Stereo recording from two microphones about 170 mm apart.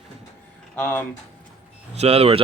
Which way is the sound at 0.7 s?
10° left (ahead or behind).